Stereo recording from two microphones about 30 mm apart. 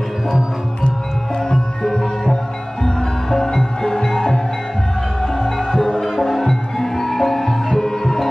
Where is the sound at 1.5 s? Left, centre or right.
Left.